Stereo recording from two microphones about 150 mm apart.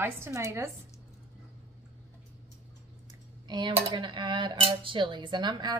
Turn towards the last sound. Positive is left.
turn(degrees=-30)  # may be behind; listen again after turning